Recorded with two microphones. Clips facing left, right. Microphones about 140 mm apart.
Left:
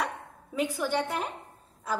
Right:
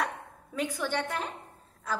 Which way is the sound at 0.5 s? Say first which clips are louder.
Left 3 dB; 10° left (ahead or behind).